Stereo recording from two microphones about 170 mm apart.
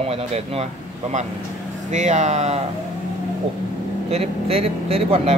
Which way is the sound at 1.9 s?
45° right (ahead or behind).